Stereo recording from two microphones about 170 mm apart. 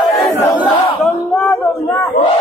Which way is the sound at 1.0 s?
5° left (ahead or behind).